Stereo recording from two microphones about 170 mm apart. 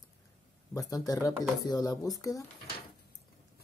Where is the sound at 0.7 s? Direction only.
20° left (ahead or behind).